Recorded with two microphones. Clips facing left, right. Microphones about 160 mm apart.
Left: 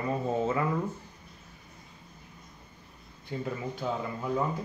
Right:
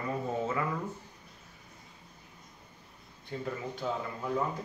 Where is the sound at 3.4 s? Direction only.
10° left (ahead or behind).